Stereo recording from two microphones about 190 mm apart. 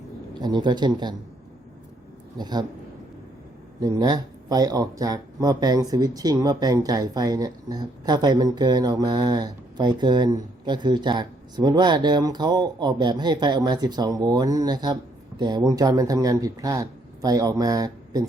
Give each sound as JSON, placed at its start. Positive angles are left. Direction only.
{"t": 0.4, "sound": "speech", "side_deg": -20}
{"t": 2.4, "sound": "speech", "side_deg": -20}
{"t": 3.8, "sound": "speech", "side_deg": -20}